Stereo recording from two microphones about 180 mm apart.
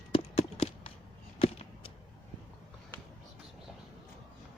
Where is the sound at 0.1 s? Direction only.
30° left (ahead or behind).